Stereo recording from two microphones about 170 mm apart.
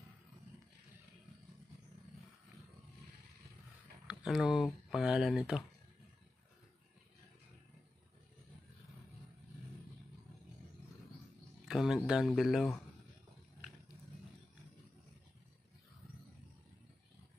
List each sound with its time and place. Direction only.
4.1 s speech: 5° right (ahead or behind)
11.6 s a sound: centre (ahead or behind)
12.3 s speech: centre (ahead or behind)